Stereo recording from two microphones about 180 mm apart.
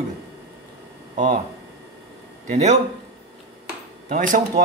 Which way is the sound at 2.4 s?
40° right (ahead or behind).